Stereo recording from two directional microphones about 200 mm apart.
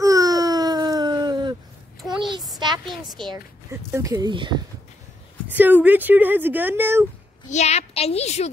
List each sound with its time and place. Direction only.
0.0 s baby cry: 15° right (ahead or behind)
2.0 s a sound: centre (ahead or behind)
2.9 s a woman's voice: centre (ahead or behind)
3.9 s speech: 15° right (ahead or behind)
5.5 s speech: 10° right (ahead or behind)
7.4 s a woman's voice: 35° left (ahead or behind)